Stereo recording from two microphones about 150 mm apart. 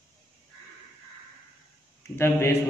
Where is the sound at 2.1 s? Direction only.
15° left (ahead or behind).